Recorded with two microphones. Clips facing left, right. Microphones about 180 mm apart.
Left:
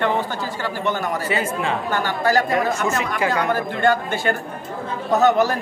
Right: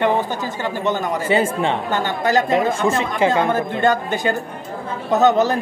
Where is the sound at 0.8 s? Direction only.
25° right (ahead or behind).